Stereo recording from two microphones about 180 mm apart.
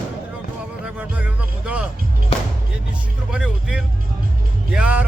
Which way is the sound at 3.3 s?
5° right (ahead or behind).